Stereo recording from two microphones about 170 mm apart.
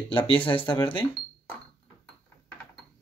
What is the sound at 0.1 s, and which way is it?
Speech, 30° left (ahead or behind).